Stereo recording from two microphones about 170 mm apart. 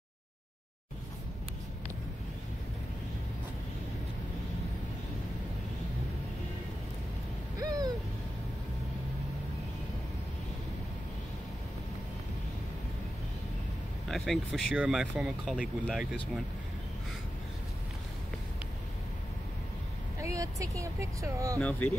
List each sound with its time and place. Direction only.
7.6 s owl: 20° right (ahead or behind)
14.0 s speech: centre (ahead or behind)
20.2 s speech: 20° right (ahead or behind)
21.5 s speech: 10° left (ahead or behind)